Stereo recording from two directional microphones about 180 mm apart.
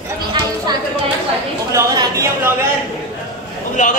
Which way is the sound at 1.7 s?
15° right (ahead or behind).